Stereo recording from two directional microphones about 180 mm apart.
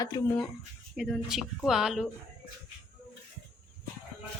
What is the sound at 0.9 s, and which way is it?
Speech, centre (ahead or behind).